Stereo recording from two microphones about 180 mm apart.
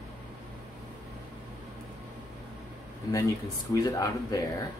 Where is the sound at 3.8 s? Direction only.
20° left (ahead or behind).